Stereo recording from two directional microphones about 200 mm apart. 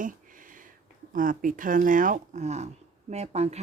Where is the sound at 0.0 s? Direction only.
40° right (ahead or behind).